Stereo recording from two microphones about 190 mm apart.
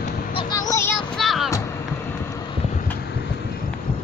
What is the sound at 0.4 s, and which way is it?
Music, 20° left (ahead or behind).